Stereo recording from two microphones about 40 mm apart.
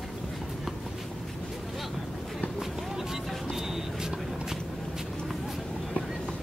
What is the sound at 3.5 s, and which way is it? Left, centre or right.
Vehicle, centre.